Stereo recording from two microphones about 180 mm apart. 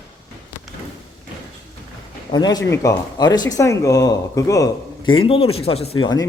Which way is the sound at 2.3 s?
20° left (ahead or behind).